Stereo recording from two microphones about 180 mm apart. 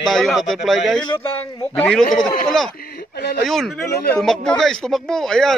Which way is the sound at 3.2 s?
65° left (ahead or behind).